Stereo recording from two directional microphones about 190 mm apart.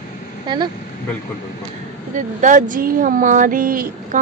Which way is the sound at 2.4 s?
40° right (ahead or behind).